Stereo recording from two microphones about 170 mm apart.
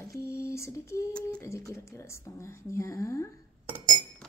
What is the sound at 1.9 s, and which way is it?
Speech, 15° left (ahead or behind).